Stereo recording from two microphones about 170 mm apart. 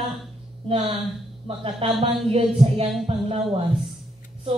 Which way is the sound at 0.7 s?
35° right (ahead or behind).